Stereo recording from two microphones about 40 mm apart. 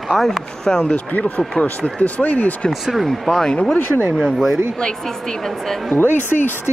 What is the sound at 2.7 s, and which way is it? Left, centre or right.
Speech, centre.